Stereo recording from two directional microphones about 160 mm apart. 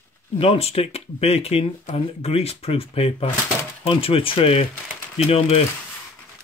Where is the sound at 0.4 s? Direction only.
40° left (ahead or behind).